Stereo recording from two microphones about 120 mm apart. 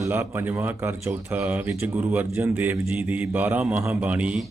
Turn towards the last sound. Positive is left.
turn(degrees=-10)  # may be behind; listen again after turning